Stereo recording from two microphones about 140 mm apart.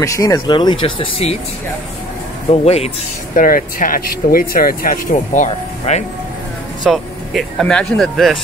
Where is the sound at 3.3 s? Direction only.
75° left (ahead or behind).